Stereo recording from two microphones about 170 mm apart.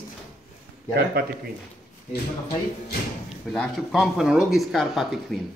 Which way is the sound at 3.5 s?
Centre (ahead or behind).